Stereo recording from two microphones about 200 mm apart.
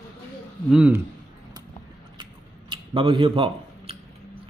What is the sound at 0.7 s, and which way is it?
Speech, 5° right (ahead or behind).